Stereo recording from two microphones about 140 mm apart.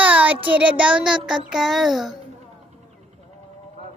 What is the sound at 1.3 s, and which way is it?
Speech, 5° right (ahead or behind).